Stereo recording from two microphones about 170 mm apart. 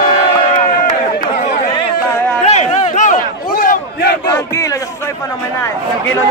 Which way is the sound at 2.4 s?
45° left (ahead or behind).